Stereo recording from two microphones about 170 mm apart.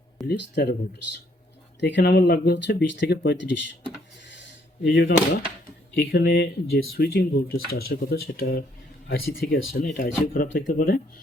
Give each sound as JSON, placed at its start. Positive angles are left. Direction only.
{"t": 0.3, "sound": "speech", "side_deg": 70}
{"t": 1.8, "sound": "speech", "side_deg": 80}
{"t": 4.4, "sound": "door", "side_deg": 90}
{"t": 5.9, "sound": "speech", "side_deg": 80}